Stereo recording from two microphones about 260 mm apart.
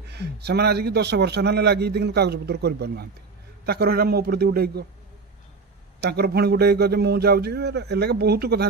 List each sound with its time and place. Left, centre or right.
0.1 s a man's voice: right
5.9 s a man's voice: right